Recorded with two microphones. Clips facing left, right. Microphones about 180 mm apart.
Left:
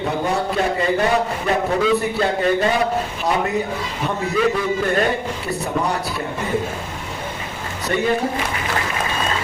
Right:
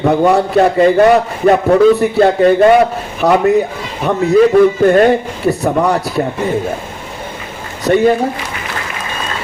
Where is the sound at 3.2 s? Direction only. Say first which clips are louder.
Right 11 dB; 70° right (ahead or behind).